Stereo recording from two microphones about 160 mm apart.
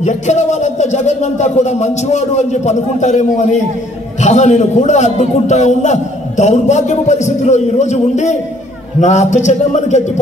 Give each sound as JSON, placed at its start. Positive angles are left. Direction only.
{"t": 0.0, "sound": "a man's voice", "side_deg": 45}